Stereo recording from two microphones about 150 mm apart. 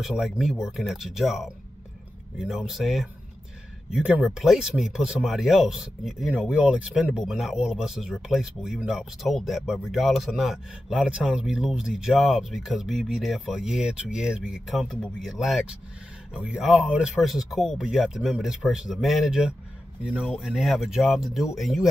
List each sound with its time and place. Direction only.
0.0 s speech: centre (ahead or behind)